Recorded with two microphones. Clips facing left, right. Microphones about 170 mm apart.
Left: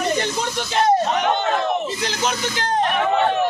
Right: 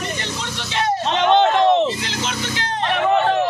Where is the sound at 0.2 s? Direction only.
45° left (ahead or behind).